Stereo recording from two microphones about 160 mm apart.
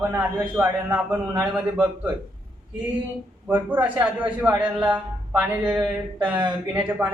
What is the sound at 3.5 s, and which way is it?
A man's voice, 10° right (ahead or behind).